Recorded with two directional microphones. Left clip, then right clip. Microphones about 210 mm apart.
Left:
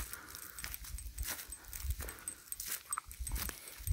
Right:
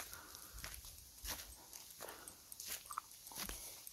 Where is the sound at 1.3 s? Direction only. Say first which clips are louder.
Left 4 dB; 50° left (ahead or behind).